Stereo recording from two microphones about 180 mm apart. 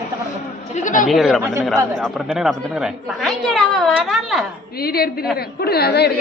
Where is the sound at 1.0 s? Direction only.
Centre (ahead or behind).